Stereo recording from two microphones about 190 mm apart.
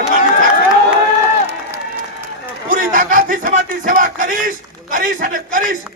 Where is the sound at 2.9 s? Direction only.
45° right (ahead or behind).